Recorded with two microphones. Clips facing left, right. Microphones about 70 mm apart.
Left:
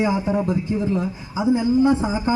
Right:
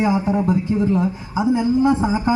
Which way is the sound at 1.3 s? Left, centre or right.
Right.